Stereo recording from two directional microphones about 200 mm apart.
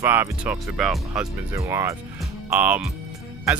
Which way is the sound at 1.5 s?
15° right (ahead or behind).